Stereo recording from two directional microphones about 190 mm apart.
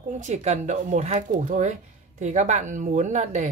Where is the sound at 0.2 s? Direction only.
35° right (ahead or behind).